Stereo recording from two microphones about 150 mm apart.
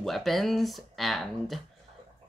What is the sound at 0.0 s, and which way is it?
Speech, centre (ahead or behind).